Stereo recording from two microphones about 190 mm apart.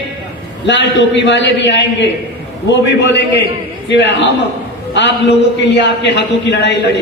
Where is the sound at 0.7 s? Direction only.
70° left (ahead or behind).